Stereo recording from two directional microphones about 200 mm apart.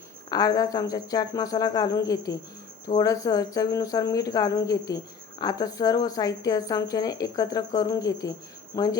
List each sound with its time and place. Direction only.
0.3 s speech: 20° left (ahead or behind)